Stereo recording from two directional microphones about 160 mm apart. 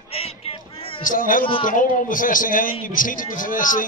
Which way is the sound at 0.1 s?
35° left (ahead or behind).